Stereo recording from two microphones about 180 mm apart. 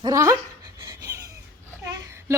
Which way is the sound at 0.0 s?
20° right (ahead or behind).